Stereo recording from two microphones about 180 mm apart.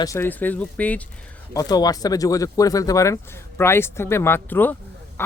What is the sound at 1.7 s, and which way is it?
Speech, 20° left (ahead or behind).